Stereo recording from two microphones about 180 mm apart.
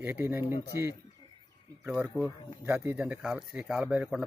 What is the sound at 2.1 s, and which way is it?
Speech, 15° right (ahead or behind).